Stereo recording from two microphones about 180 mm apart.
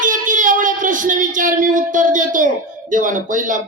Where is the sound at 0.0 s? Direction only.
45° right (ahead or behind).